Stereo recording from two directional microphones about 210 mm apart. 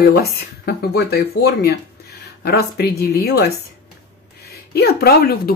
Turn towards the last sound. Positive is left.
turn(degrees=45)  # may be behind; listen again after turning